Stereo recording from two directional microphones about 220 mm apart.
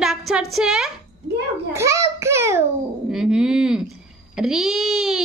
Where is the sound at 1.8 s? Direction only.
15° right (ahead or behind).